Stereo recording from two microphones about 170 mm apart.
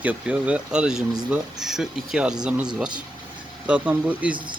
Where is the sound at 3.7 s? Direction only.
10° right (ahead or behind).